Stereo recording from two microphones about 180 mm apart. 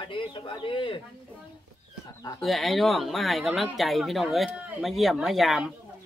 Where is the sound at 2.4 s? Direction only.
Centre (ahead or behind).